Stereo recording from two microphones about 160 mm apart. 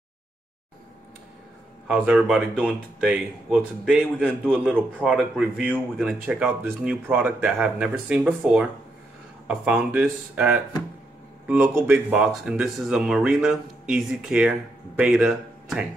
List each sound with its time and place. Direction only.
1.9 s speech: 5° right (ahead or behind)